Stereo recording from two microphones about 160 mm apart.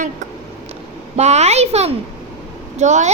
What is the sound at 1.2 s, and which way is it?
A child's voice, 45° right (ahead or behind).